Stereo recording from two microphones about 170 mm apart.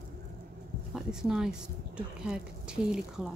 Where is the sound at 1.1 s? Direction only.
5° right (ahead or behind).